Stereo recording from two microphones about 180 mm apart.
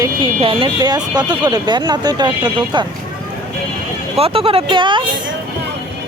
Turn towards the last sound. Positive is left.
turn(degrees=-25)  # may be behind; listen again after turning